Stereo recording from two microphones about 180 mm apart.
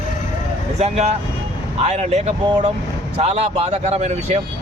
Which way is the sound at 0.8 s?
35° right (ahead or behind).